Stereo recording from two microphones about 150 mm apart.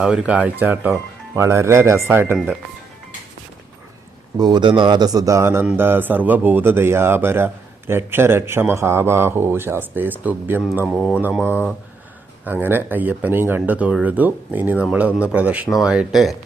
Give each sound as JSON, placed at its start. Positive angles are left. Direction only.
{"t": 0.0, "sound": "a man's voice", "side_deg": -5}
{"t": 4.4, "sound": "a man's voice", "side_deg": -30}
{"t": 10.8, "sound": "speech", "side_deg": 0}
{"t": 12.5, "sound": "a man's voice", "side_deg": -15}